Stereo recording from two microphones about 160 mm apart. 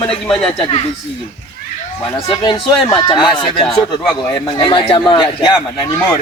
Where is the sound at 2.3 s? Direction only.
30° left (ahead or behind).